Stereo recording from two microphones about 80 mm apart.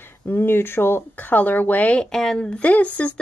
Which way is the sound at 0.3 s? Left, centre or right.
Left.